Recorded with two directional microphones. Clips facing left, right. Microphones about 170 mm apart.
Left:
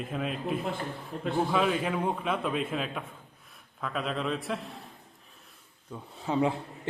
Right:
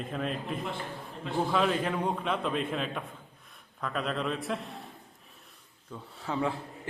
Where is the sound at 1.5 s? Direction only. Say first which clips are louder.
Right 2 dB; 5° left (ahead or behind).